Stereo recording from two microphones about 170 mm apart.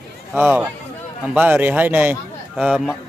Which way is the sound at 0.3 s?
10° right (ahead or behind).